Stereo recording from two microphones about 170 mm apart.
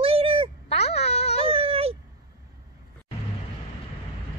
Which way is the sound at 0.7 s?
40° left (ahead or behind).